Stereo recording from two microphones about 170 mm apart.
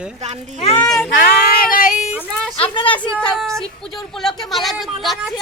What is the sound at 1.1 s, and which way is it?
Female singing, 65° left (ahead or behind).